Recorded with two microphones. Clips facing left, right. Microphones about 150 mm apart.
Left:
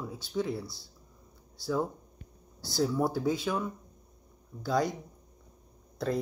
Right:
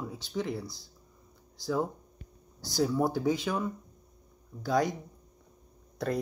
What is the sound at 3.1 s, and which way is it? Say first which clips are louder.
Speech: right 1 dB; centre (ahead or behind).